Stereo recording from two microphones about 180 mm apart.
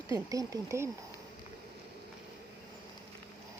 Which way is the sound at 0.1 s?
20° right (ahead or behind).